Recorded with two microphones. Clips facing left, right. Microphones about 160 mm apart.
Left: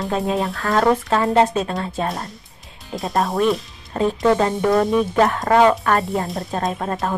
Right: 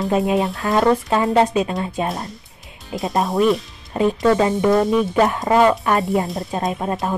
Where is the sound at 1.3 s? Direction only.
5° right (ahead or behind).